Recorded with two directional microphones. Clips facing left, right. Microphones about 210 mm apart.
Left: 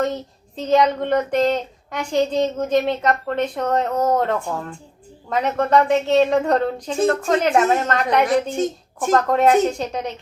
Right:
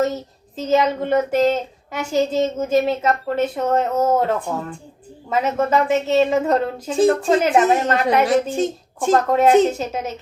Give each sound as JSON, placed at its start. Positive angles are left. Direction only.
{"t": 0.0, "sound": "speech", "side_deg": -5}
{"t": 8.4, "sound": "a woman's voice", "side_deg": -30}
{"t": 9.1, "sound": "speech", "side_deg": 0}